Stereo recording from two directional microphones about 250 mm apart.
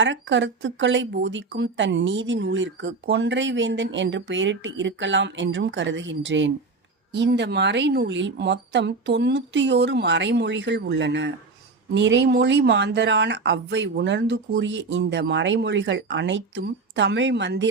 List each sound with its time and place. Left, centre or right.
0.0 s speech: right